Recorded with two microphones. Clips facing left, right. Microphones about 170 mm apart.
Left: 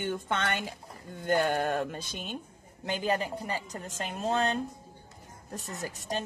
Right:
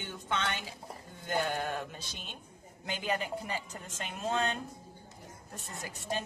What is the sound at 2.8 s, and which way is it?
A woman's voice, 35° left (ahead or behind).